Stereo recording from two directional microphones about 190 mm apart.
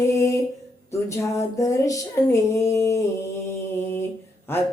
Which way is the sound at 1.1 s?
15° left (ahead or behind).